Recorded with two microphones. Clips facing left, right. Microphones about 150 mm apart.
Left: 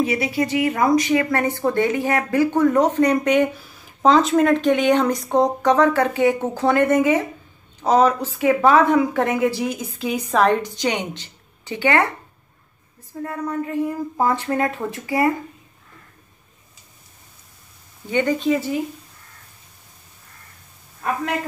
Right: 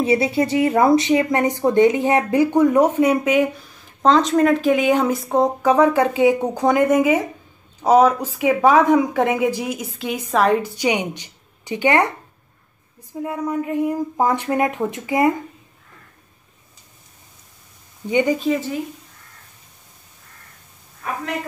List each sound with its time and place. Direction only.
0.0 s speech: 30° right (ahead or behind); by 9.8 s 10° right (ahead or behind)
9.9 s speech: centre (ahead or behind); by 12.1 s 15° right (ahead or behind)
13.1 s speech: 15° right (ahead or behind)